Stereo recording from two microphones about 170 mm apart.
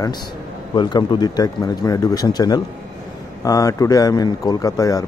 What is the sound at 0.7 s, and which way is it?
Speech, 25° left (ahead or behind).